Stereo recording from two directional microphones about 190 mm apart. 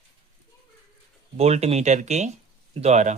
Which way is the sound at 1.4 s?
35° right (ahead or behind).